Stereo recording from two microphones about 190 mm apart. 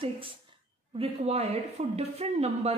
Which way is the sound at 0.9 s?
30° right (ahead or behind).